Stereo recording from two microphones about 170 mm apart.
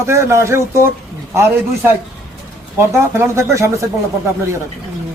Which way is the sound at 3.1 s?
15° right (ahead or behind).